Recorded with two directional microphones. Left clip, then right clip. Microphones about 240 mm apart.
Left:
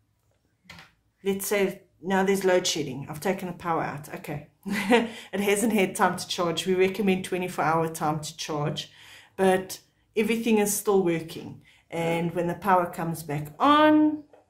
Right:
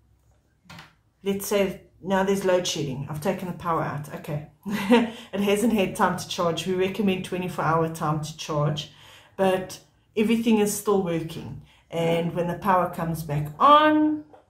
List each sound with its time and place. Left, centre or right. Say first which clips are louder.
1.2 s speech: right 1 dB; left